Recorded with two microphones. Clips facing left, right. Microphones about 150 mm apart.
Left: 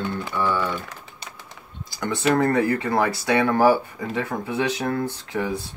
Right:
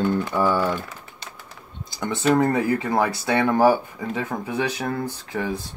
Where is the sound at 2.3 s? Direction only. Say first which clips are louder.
Left 1 dB; 15° right (ahead or behind).